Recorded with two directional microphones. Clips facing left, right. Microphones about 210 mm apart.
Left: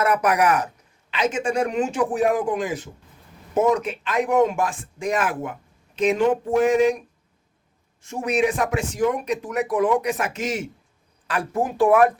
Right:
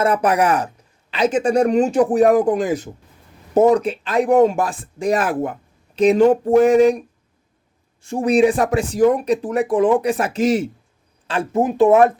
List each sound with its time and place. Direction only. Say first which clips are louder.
0.0 s speech: right 3 dB; 30° right (ahead or behind)
8.0 s speech: right 7 dB; 30° right (ahead or behind)